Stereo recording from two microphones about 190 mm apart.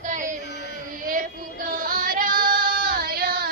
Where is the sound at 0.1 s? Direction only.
45° right (ahead or behind).